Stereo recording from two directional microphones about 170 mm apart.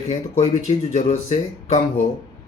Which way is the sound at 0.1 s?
40° left (ahead or behind).